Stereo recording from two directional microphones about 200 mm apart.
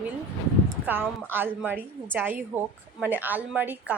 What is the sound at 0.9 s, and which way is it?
A woman's voice, 10° right (ahead or behind).